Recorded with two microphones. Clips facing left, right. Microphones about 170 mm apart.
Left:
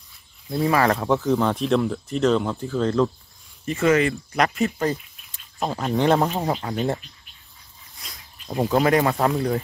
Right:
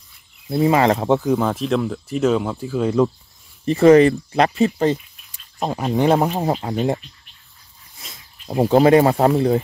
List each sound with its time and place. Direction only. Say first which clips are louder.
0.6 s speech: right 4 dB; 20° right (ahead or behind)
1.2 s speech: right 2 dB; 5° right (ahead or behind)
3.6 s speech: right 8 dB; 35° right (ahead or behind)
5.3 s speech: right 2 dB; 15° right (ahead or behind)
6.4 s speech: right 4 dB; 25° right (ahead or behind)
8.5 s speech: right 6 dB; 30° right (ahead or behind)